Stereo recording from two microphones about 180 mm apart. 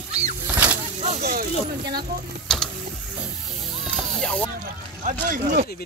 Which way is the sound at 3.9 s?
5° left (ahead or behind).